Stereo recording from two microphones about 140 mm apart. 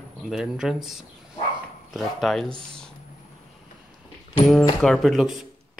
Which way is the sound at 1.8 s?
Centre (ahead or behind).